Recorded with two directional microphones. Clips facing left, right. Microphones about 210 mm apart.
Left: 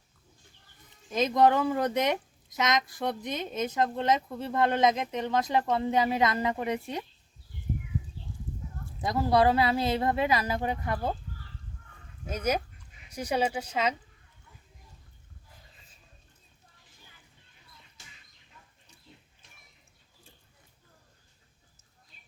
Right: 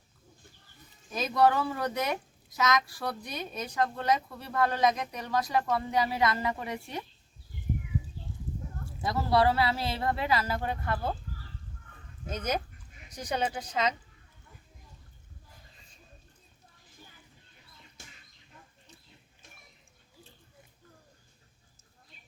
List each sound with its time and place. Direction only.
1.1 s speech: 20° left (ahead or behind)
9.0 s speech: 20° left (ahead or behind)
12.2 s speech: 10° left (ahead or behind)